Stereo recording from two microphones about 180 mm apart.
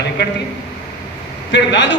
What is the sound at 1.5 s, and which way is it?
Speech, 90° left.